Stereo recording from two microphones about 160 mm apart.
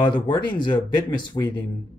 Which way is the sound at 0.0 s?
30° left (ahead or behind).